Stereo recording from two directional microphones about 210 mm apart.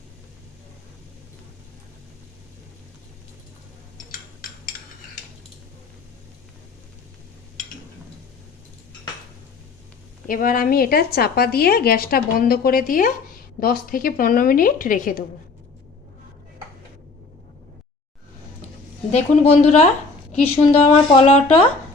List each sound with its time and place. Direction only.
10.2 s a woman's voice: 40° left (ahead or behind)
19.1 s a woman's voice: 30° left (ahead or behind)